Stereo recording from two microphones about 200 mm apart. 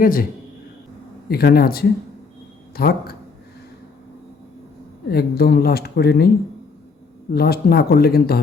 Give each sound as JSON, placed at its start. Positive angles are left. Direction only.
{"t": 0.0, "sound": "speech", "side_deg": 45}
{"t": 1.3, "sound": "speech", "side_deg": 50}
{"t": 5.0, "sound": "speech", "side_deg": 50}